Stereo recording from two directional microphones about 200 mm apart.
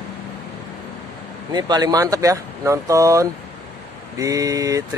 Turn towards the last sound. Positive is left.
turn(degrees=-15)  # may be behind; listen again after turning